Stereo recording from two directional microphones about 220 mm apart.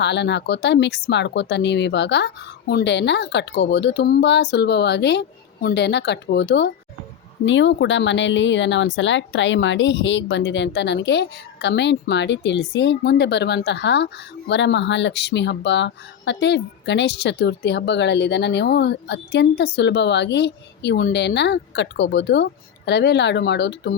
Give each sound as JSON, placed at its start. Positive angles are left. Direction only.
{"t": 0.0, "sound": "speech", "side_deg": 50}